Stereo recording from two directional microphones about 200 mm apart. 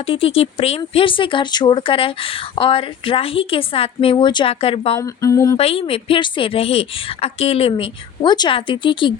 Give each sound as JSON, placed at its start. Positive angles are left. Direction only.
{"t": 0.1, "sound": "speech", "side_deg": 30}
{"t": 4.9, "sound": "a sound", "side_deg": 15}
{"t": 5.5, "sound": "speech", "side_deg": 30}